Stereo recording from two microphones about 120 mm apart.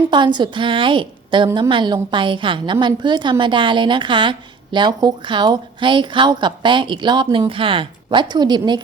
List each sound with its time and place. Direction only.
0.1 s a woman's voice: 40° right (ahead or behind)